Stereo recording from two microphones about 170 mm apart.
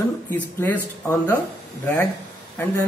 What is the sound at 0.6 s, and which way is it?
Speech, 15° left (ahead or behind).